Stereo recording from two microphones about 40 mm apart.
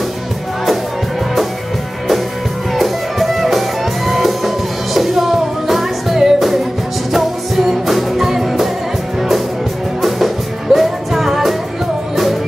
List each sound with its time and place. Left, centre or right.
2.7 s music: centre
10.0 s music: centre